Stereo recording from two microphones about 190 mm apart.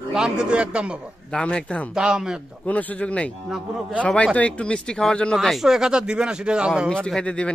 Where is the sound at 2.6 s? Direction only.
10° left (ahead or behind).